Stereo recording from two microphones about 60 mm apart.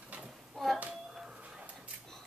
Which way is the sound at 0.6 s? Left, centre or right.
Centre.